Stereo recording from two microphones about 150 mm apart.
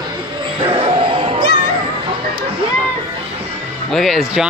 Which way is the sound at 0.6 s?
35° right (ahead or behind).